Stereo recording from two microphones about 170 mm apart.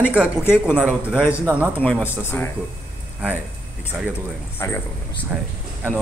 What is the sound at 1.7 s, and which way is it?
Speech, 10° left (ahead or behind).